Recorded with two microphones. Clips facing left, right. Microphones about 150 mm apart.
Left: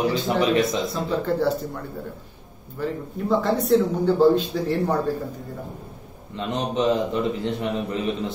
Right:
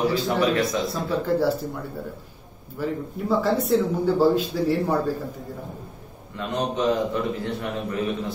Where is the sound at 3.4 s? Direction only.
5° right (ahead or behind).